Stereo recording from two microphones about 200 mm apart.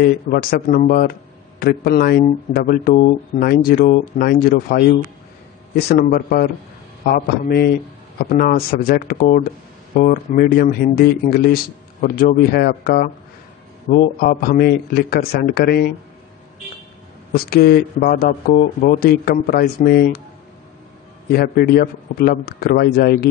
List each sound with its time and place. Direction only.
0.0 s speech: 45° left (ahead or behind)
17.3 s speech: 50° left (ahead or behind)
21.3 s speech: 50° left (ahead or behind)